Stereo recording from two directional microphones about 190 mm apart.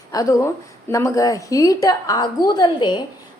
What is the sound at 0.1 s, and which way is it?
A woman's voice, 15° left (ahead or behind).